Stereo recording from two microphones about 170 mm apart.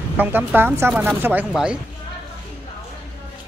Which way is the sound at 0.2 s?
10° right (ahead or behind).